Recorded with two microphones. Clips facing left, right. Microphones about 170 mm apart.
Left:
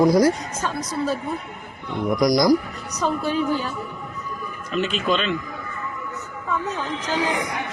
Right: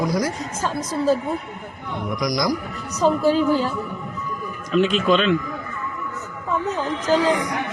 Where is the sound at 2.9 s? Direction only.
30° right (ahead or behind).